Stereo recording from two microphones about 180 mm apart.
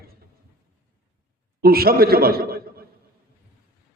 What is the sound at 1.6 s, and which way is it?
A man's voice, 55° right (ahead or behind).